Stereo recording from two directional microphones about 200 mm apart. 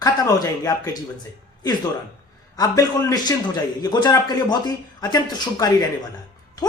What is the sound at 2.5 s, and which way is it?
Speech, 20° left (ahead or behind).